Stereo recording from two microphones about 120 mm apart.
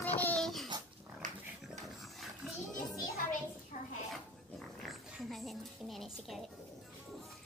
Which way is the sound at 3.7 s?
90° left.